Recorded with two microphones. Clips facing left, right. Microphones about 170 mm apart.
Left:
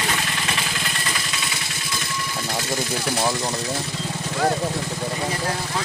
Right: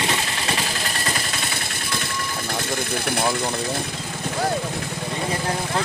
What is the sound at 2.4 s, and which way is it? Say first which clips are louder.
Speech: left 1 dB; 55° right (ahead or behind).